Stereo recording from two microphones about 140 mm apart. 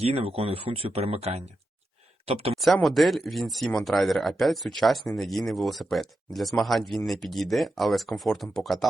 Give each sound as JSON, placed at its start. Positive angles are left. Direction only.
{"t": 0.0, "sound": "speech", "side_deg": -45}
{"t": 2.8, "sound": "speech", "side_deg": 0}